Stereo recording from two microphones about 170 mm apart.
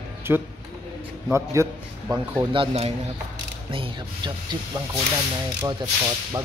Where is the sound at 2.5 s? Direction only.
35° right (ahead or behind).